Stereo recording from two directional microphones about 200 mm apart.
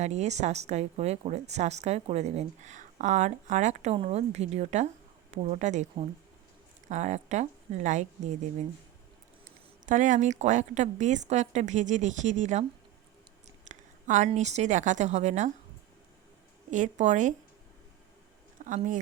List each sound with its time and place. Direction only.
0.0 s a woman's voice: 35° right (ahead or behind)
9.8 s a woman's voice: 40° right (ahead or behind)
13.7 s a woman's voice: 35° right (ahead or behind)
16.7 s a woman's voice: 35° right (ahead or behind)
18.6 s speech: 40° right (ahead or behind)